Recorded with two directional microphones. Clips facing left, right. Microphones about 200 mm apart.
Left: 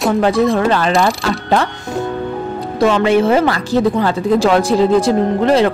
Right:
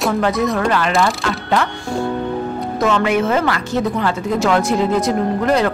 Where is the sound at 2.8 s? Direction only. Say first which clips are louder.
Left 4 dB; 30° left (ahead or behind).